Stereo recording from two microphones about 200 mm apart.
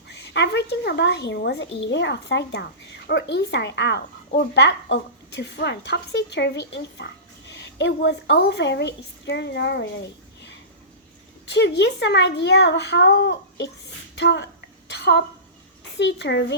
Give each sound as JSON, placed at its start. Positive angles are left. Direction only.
{"t": 0.1, "sound": "speech", "side_deg": 60}
{"t": 11.4, "sound": "speech", "side_deg": 60}
{"t": 14.8, "sound": "a sound", "side_deg": 55}
{"t": 16.0, "sound": "speech", "side_deg": 60}